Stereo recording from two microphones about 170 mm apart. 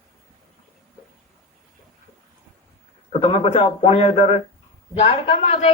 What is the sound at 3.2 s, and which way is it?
A man's voice, 30° left (ahead or behind).